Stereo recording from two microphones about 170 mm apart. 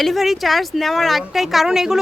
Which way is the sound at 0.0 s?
Centre (ahead or behind).